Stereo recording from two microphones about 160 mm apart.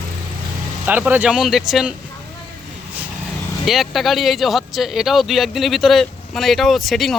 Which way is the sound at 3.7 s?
Centre (ahead or behind).